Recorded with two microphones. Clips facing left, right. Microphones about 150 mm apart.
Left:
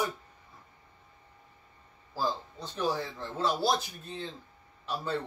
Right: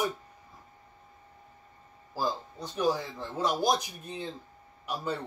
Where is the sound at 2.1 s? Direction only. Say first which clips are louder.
Right 1 dB; 10° right (ahead or behind).